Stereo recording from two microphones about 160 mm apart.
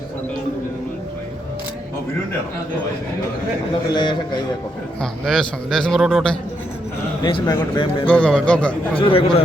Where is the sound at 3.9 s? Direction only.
30° left (ahead or behind).